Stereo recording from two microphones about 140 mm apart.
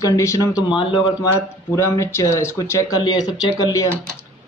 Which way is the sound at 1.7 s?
20° left (ahead or behind).